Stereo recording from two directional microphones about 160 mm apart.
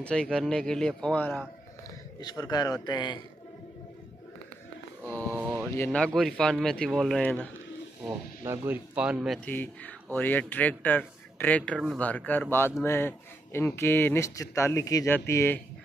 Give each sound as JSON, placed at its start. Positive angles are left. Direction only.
{"t": 0.0, "sound": "a man's voice", "side_deg": 5}
{"t": 2.1, "sound": "a man's voice", "side_deg": 25}
{"t": 5.2, "sound": "a sound", "side_deg": -10}
{"t": 5.9, "sound": "a man's voice", "side_deg": 5}
{"t": 8.5, "sound": "speech", "side_deg": -10}
{"t": 9.4, "sound": "speech", "side_deg": 10}